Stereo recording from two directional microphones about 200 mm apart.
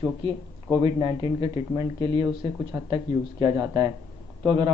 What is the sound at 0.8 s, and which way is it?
Speech, 20° right (ahead or behind).